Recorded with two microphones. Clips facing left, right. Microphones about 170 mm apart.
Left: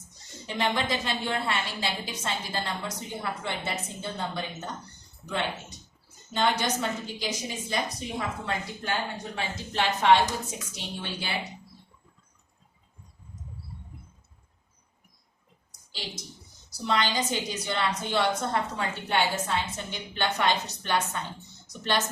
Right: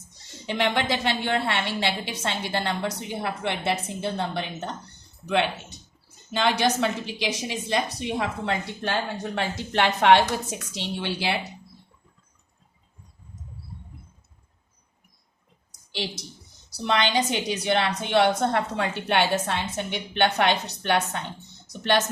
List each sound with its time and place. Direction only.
0.4 s a woman's voice: 70° right (ahead or behind)
6.3 s a woman's voice: 75° right (ahead or behind)
15.9 s a woman's voice: 70° right (ahead or behind)